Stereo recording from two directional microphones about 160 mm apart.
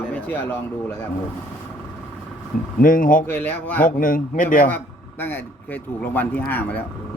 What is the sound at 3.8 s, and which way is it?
Speech, 55° left (ahead or behind).